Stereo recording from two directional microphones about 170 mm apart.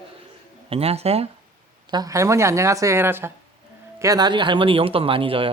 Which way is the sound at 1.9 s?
20° right (ahead or behind).